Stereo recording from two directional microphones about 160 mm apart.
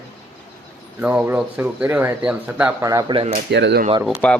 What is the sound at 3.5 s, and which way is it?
Speech, 90° right.